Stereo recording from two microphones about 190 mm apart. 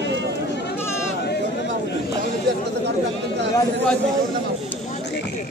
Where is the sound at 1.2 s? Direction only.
65° left (ahead or behind).